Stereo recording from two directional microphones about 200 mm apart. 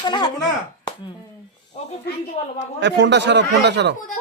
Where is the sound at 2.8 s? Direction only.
60° right (ahead or behind).